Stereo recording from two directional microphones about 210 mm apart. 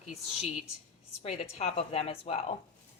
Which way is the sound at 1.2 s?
30° left (ahead or behind).